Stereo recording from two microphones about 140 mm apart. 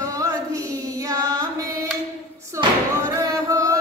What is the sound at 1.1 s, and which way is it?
Carnatic music, 25° right (ahead or behind).